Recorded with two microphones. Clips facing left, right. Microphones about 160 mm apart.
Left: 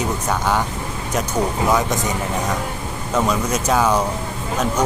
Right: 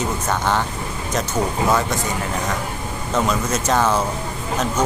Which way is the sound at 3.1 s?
10° left (ahead or behind).